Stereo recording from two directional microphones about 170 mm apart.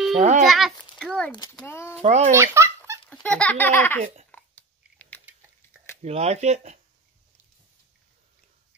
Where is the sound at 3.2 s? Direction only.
5° left (ahead or behind).